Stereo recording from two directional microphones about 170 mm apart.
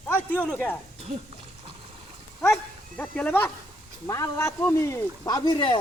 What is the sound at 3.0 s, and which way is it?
A man's voice, 10° left (ahead or behind).